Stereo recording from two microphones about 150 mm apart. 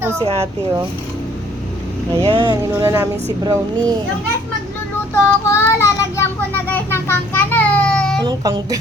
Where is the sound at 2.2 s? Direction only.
35° right (ahead or behind); by 3.0 s 20° right (ahead or behind).